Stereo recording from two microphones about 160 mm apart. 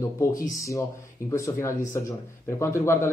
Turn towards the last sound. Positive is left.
turn(degrees=15)  # may be behind; listen again after turning